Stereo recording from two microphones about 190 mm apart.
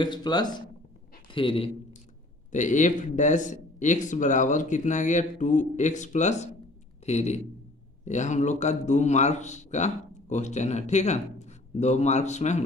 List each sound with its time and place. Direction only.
0.0 s a man's voice: 25° left (ahead or behind)
2.5 s a man's voice: 40° left (ahead or behind)